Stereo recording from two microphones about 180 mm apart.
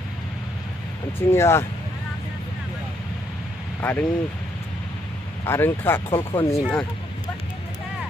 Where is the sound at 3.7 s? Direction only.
10° left (ahead or behind).